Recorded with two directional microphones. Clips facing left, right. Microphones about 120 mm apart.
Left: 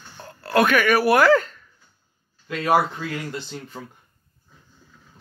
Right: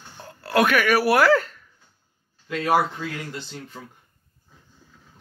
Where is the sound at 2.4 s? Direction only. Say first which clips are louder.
Left 1 dB; 50° left (ahead or behind).